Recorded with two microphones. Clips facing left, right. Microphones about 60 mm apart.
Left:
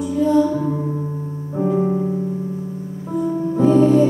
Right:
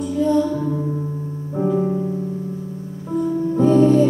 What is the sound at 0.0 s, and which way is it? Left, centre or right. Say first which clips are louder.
Music: left 2 dB; centre.